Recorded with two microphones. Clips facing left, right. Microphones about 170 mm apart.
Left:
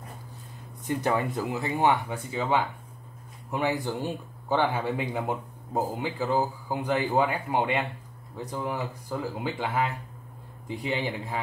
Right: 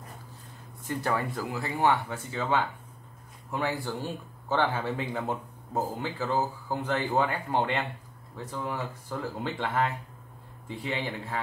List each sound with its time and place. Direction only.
0.8 s speech: 20° left (ahead or behind)